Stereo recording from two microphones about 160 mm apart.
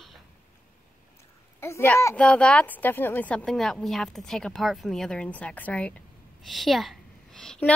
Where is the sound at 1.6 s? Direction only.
15° left (ahead or behind).